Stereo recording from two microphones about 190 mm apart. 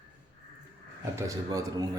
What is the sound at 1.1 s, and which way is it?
Speech, 20° right (ahead or behind).